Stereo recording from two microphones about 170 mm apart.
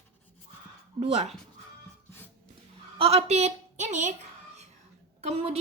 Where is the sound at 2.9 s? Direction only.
35° right (ahead or behind).